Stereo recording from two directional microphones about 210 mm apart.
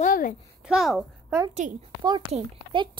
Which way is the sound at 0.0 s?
40° left (ahead or behind).